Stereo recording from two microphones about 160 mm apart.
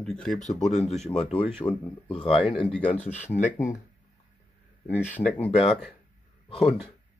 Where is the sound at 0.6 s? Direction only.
45° left (ahead or behind).